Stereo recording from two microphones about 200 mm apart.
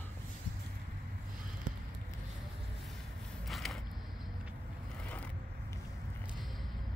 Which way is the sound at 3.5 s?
Centre (ahead or behind).